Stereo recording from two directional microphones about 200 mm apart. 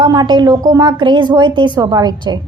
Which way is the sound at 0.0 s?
20° right (ahead or behind).